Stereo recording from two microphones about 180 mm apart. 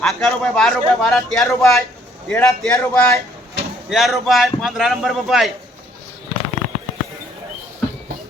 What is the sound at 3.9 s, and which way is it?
Speech, centre (ahead or behind).